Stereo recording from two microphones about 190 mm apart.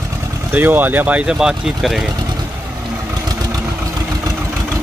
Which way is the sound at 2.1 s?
20° right (ahead or behind).